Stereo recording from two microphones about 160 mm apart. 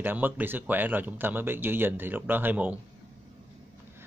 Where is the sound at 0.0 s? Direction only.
10° right (ahead or behind).